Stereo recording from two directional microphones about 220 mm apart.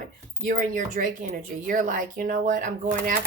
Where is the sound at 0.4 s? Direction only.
35° right (ahead or behind).